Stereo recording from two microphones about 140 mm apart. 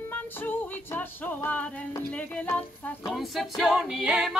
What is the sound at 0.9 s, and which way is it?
Music, 10° left (ahead or behind).